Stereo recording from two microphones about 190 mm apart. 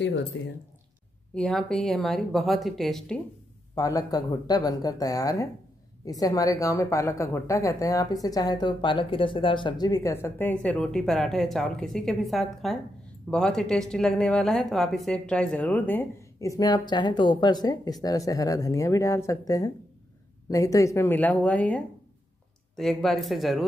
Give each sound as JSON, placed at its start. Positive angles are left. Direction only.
{"t": 0.3, "sound": "speech", "side_deg": 80}
{"t": 1.3, "sound": "speech", "side_deg": 5}
{"t": 3.7, "sound": "a woman's voice", "side_deg": 20}